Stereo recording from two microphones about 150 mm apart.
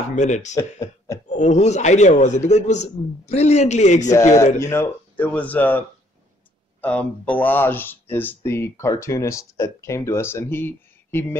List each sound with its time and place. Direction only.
0.1 s a man's voice: 55° left (ahead or behind)
0.6 s speech: 20° left (ahead or behind)
1.3 s a man's voice: 50° left (ahead or behind)
4.6 s speech: 15° left (ahead or behind)